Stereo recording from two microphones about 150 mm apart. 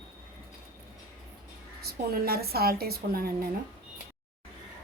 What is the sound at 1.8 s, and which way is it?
A woman's voice, 90° right.